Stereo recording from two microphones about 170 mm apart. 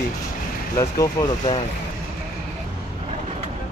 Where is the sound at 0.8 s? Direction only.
20° left (ahead or behind).